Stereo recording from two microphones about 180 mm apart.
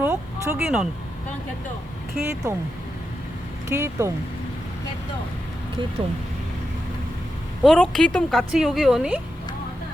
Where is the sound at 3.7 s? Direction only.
15° right (ahead or behind).